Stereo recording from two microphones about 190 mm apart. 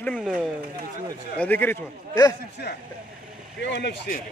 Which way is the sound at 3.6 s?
65° left (ahead or behind).